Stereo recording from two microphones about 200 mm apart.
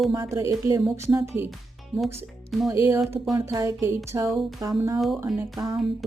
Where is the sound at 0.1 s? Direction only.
15° right (ahead or behind).